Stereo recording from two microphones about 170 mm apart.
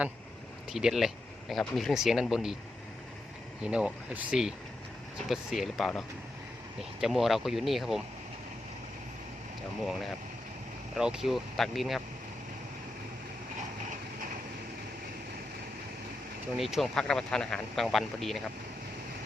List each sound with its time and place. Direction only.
0.7 s speech: 5° right (ahead or behind)
3.6 s speech: 5° right (ahead or behind)
9.8 s speech: centre (ahead or behind)
16.6 s speech: centre (ahead or behind)